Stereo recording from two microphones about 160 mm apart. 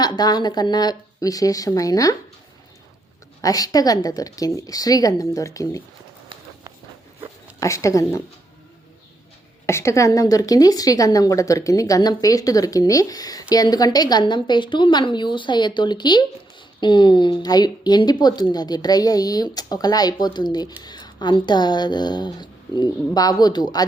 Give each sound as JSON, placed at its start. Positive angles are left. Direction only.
{"t": 0.0, "sound": "a woman's voice", "side_deg": 25}
{"t": 3.4, "sound": "a woman's voice", "side_deg": 25}
{"t": 7.6, "sound": "a woman's voice", "side_deg": 20}
{"t": 9.6, "sound": "a woman's voice", "side_deg": 15}